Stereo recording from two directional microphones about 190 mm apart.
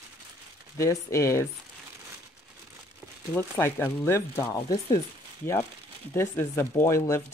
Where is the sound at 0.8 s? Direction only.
15° left (ahead or behind).